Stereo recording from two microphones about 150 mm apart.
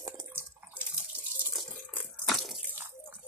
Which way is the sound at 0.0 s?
15° right (ahead or behind).